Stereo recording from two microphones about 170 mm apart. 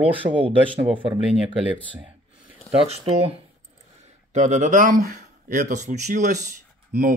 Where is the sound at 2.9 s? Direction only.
40° right (ahead or behind).